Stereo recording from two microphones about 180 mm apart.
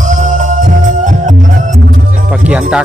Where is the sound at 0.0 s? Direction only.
45° right (ahead or behind).